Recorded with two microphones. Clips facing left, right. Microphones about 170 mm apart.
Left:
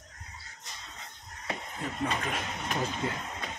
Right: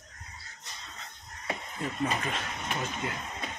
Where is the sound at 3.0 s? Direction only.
30° left (ahead or behind).